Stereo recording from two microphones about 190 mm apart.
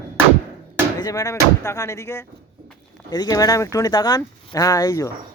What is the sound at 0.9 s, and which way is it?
Speech, 20° left (ahead or behind).